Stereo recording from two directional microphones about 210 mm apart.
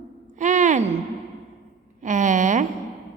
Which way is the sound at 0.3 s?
35° right (ahead or behind).